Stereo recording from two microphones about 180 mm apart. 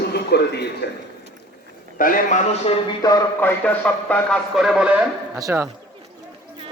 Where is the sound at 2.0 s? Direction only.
45° left (ahead or behind).